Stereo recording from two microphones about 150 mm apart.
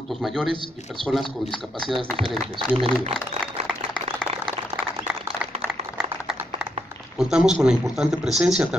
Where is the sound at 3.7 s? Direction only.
35° right (ahead or behind).